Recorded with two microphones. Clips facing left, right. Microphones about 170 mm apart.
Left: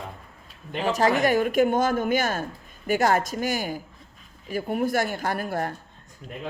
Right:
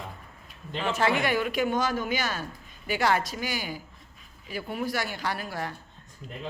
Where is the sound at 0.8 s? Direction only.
40° left (ahead or behind).